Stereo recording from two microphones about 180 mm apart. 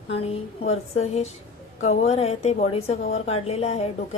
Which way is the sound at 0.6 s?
35° left (ahead or behind).